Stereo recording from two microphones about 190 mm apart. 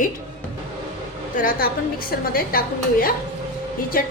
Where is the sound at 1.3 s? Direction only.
45° left (ahead or behind).